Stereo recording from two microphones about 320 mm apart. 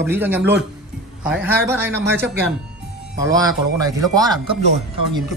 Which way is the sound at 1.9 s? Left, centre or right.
Right.